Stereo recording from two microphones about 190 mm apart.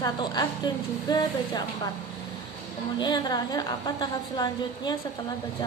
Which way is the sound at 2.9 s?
20° left (ahead or behind).